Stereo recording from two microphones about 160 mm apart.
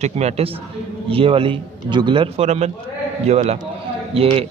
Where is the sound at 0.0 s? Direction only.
45° right (ahead or behind).